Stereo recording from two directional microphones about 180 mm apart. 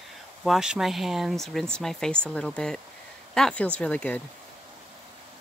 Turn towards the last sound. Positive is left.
turn(degrees=5)  # may be behind; listen again after turning